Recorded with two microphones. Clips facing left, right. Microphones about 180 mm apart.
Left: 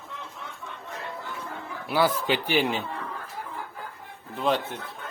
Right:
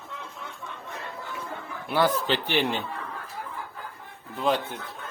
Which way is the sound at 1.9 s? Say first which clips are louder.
Even; 10° left (ahead or behind).